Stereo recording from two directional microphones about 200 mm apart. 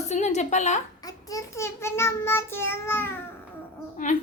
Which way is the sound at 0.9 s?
20° left (ahead or behind).